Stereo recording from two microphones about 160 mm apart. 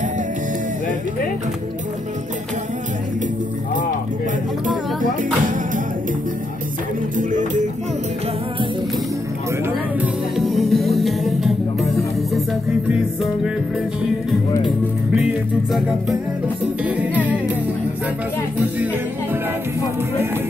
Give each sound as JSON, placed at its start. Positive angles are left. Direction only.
{"t": 7.2, "sound": "music", "side_deg": -55}
{"t": 9.9, "sound": "music", "side_deg": 0}
{"t": 12.8, "sound": "music", "side_deg": -5}
{"t": 16.8, "sound": "music", "side_deg": -10}